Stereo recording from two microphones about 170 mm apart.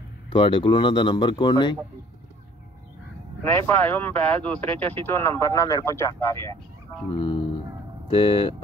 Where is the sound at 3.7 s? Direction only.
10° left (ahead or behind).